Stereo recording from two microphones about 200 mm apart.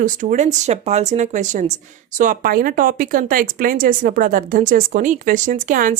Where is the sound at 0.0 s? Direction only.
40° right (ahead or behind).